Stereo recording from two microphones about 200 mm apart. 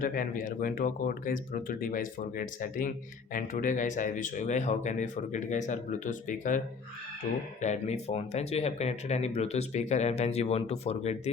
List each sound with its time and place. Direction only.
0.0 s speech: 45° left (ahead or behind)